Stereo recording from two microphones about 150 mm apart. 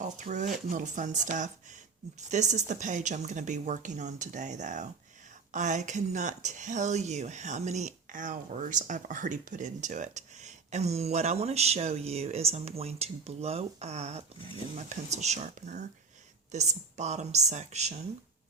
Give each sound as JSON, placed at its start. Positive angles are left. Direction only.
{"t": 0.0, "sound": "speech", "side_deg": -55}